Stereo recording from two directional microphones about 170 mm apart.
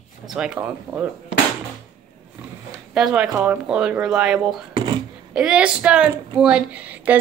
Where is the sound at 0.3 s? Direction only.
5° right (ahead or behind).